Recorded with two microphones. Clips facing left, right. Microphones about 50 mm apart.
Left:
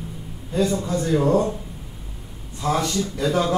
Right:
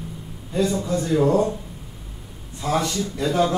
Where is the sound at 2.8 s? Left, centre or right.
Centre.